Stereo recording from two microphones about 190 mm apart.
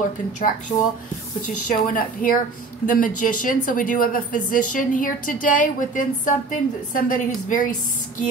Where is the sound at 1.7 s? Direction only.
45° left (ahead or behind).